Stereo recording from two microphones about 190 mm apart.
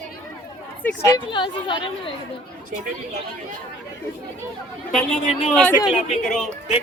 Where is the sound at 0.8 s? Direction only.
15° left (ahead or behind).